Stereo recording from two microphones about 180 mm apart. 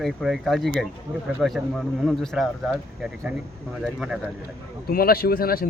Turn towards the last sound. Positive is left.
turn(degrees=55)  # may be behind; listen again after turning